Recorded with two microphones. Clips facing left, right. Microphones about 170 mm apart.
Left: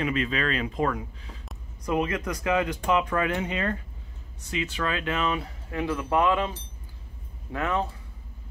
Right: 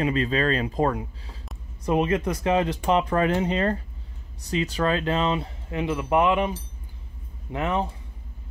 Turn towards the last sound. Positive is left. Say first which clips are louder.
# right 2 dB
turn(degrees=-20)  # may be behind; listen again after turning